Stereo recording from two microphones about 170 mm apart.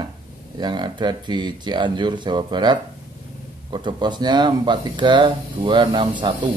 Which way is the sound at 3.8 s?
25° right (ahead or behind).